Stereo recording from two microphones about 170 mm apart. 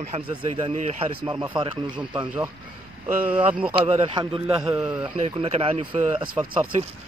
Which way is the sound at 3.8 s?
35° right (ahead or behind).